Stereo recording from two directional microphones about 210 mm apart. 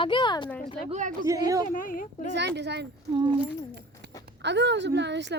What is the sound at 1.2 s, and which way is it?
Speech, 15° right (ahead or behind).